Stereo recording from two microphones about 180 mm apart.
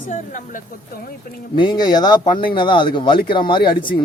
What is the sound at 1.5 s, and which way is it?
Speech, 25° left (ahead or behind).